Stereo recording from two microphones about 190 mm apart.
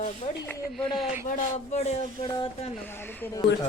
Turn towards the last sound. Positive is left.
turn(degrees=10)  # may be behind; listen again after turning